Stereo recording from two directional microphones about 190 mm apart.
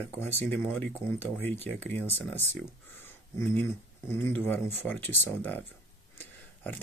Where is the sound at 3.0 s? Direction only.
10° left (ahead or behind).